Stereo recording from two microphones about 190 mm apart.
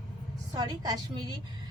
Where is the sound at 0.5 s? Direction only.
20° right (ahead or behind).